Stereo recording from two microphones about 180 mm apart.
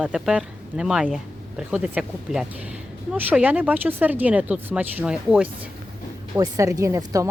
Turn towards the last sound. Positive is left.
turn(degrees=-15)  # may be behind; listen again after turning